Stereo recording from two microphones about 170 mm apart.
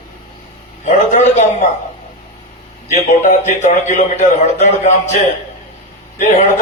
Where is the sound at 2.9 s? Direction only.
45° left (ahead or behind).